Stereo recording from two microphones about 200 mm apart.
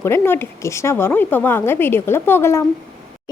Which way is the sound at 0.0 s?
10° left (ahead or behind).